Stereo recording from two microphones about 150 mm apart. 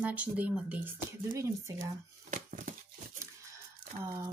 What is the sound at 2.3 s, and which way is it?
Crumpling, 65° right (ahead or behind).